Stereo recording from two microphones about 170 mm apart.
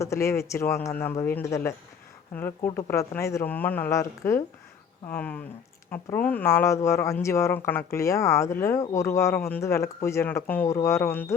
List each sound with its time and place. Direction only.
0.0 s speech: 15° left (ahead or behind)